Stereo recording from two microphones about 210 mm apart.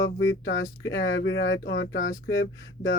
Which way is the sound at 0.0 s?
60° left (ahead or behind).